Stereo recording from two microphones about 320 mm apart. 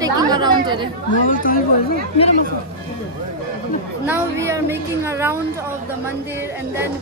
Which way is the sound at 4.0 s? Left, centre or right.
Centre.